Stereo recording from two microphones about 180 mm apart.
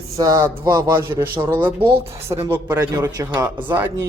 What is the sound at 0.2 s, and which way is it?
A man's voice, 15° right (ahead or behind).